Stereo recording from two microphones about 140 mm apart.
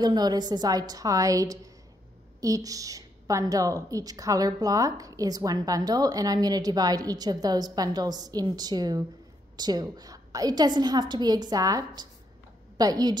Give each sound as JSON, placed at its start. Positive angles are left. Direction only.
{"t": 0.0, "sound": "a woman's voice", "side_deg": -30}